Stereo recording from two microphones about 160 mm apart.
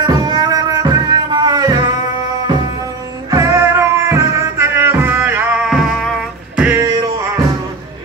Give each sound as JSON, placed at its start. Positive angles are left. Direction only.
{"t": 0.0, "sound": "music", "side_deg": -25}